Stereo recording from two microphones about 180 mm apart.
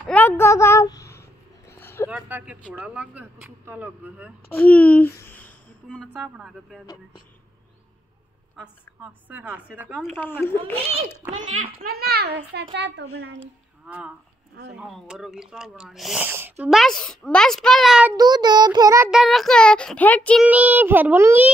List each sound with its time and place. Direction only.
0.0 s a sound: 10° left (ahead or behind)
2.0 s speech: 10° right (ahead or behind)
4.6 s speech: 10° left (ahead or behind)
6.2 s speech: 5° right (ahead or behind)
8.5 s speech: 10° right (ahead or behind)
10.1 s speech: 10° left (ahead or behind)
11.3 s a child's voice: 45° right (ahead or behind)
11.8 s a child's voice: 60° right (ahead or behind); by 13.4 s 80° right
13.8 s speech: 5° right (ahead or behind)
18.1 s a child's voice: 20° right (ahead or behind)
19.0 s speech: centre (ahead or behind)
20.4 s speech: 10° right (ahead or behind)